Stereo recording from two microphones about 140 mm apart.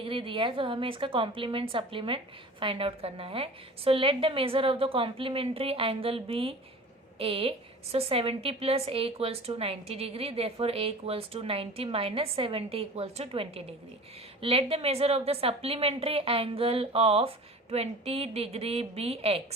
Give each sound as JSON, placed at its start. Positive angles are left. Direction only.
{"t": 0.0, "sound": "a woman's voice", "side_deg": -40}